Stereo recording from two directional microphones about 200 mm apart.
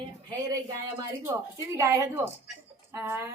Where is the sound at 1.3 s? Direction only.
15° right (ahead or behind).